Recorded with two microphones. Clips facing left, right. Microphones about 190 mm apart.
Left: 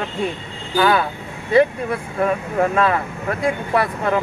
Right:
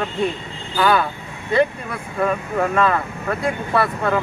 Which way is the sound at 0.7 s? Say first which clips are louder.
Left 1 dB; 5° left (ahead or behind).